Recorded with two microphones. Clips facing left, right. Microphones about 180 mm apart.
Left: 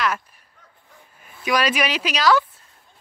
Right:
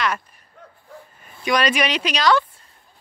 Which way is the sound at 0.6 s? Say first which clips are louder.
Right 11 dB; 60° right (ahead or behind).